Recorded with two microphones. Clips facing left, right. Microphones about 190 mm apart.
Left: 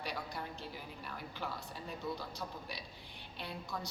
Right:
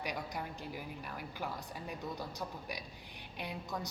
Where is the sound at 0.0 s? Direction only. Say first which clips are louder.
Right 2 dB; 15° right (ahead or behind).